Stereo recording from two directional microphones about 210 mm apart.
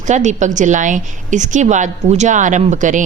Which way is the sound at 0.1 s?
35° right (ahead or behind).